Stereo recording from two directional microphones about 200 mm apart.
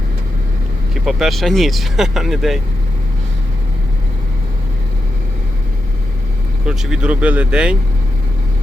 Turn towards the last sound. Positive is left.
turn(degrees=-5)  # may be behind; listen again after turning